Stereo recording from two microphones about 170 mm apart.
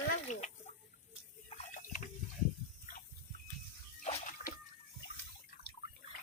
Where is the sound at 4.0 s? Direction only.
40° left (ahead or behind).